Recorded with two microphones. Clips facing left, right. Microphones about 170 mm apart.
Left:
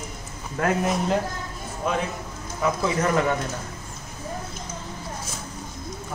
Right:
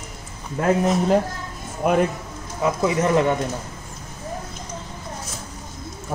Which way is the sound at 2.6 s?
25° right (ahead or behind).